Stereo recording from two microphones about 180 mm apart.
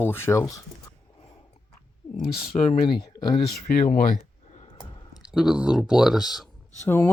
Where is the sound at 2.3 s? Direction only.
30° left (ahead or behind).